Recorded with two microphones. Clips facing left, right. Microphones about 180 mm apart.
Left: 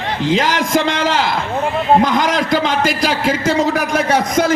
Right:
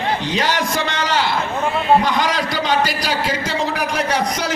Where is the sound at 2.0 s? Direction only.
45° left (ahead or behind).